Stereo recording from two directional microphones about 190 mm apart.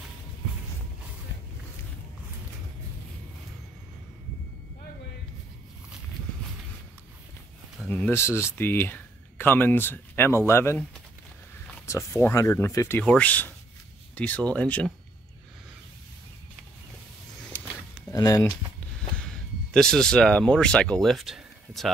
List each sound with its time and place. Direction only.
7.9 s speech: 10° left (ahead or behind)
18.1 s speech: 15° left (ahead or behind)
19.1 s speech: 5° left (ahead or behind)